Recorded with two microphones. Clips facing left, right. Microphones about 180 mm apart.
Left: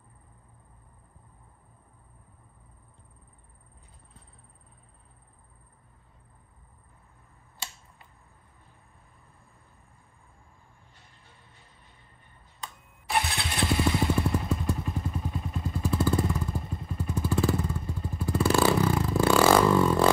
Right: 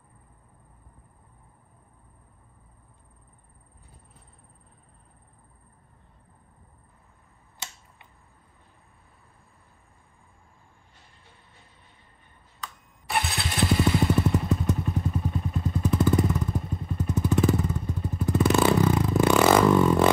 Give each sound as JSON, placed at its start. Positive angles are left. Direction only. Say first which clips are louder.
{"t": 13.1, "sound": "motorcycle", "louder": "even", "side_deg": 0}
{"t": 14.8, "sound": "vehicle", "louder": "right 4 dB", "side_deg": 0}
{"t": 15.8, "sound": "vehicle", "louder": "right 3 dB", "side_deg": -20}
{"t": 16.3, "sound": "motorcycle", "louder": "right 3 dB", "side_deg": -5}
{"t": 17.1, "sound": "vehicle", "louder": "right 4 dB", "side_deg": -20}
{"t": 17.8, "sound": "vehicle", "louder": "right 4 dB", "side_deg": 0}
{"t": 18.2, "sound": "vehicle", "louder": "right 2 dB", "side_deg": -20}